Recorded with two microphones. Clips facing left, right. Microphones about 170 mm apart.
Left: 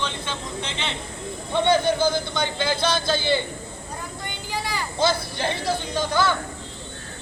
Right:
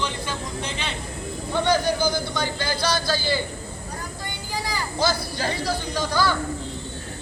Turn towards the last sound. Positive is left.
turn(degrees=20)  # may be behind; listen again after turning